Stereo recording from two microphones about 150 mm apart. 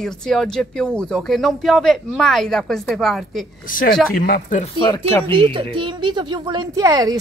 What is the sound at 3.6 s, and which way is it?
Speech, 65° left (ahead or behind).